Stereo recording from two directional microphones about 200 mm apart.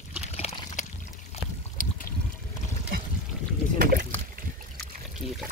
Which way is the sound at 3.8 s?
45° right (ahead or behind).